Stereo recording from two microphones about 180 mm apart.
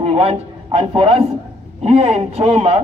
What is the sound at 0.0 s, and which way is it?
A man's voice, 35° right (ahead or behind).